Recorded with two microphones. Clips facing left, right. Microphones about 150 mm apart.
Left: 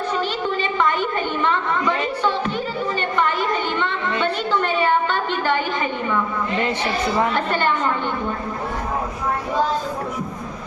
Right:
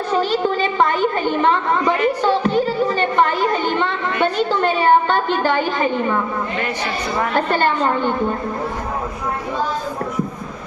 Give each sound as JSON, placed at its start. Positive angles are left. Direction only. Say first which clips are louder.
{"t": 0.2, "sound": "a woman's voice", "louder": "right 5 dB", "side_deg": -40}
{"t": 2.2, "sound": "a sound", "louder": "right 5 dB", "side_deg": -40}
{"t": 7.3, "sound": "a woman's voice", "louder": "right 4 dB", "side_deg": -45}